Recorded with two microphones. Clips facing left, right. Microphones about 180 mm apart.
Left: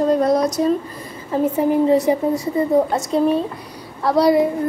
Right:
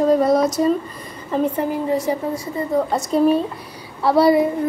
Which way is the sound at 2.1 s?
15° left (ahead or behind).